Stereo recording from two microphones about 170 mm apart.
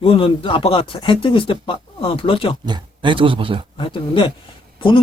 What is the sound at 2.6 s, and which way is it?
Speech, 25° right (ahead or behind).